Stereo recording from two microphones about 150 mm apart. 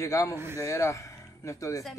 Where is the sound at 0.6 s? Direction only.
20° left (ahead or behind).